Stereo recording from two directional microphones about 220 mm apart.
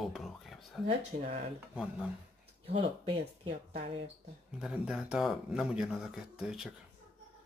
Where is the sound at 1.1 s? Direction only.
30° right (ahead or behind).